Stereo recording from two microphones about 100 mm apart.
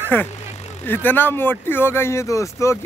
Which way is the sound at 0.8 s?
20° left (ahead or behind).